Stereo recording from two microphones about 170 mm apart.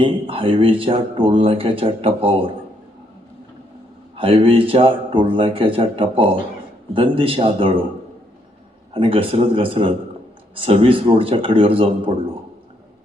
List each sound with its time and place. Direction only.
0.0 s speech: 30° right (ahead or behind)
4.1 s speech: 35° right (ahead or behind)
8.9 s speech: 30° right (ahead or behind)